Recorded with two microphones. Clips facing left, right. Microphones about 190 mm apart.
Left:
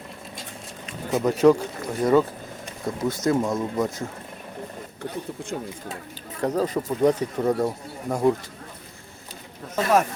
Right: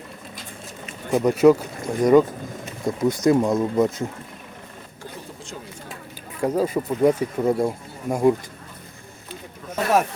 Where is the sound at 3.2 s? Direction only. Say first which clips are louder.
Right 4 dB; 20° right (ahead or behind).